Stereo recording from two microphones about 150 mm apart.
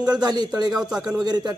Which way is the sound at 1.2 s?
30° right (ahead or behind).